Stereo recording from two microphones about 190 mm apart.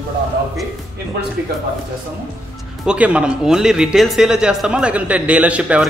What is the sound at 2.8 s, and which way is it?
Speech, 5° right (ahead or behind).